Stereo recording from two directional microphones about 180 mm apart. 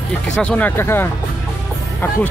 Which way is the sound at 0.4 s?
5° left (ahead or behind).